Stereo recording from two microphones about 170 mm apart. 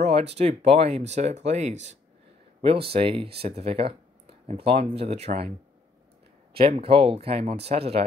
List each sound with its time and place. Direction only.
0.0 s a sound: 35° right (ahead or behind)
0.4 s speech: 40° right (ahead or behind)
6.5 s speech: 35° right (ahead or behind)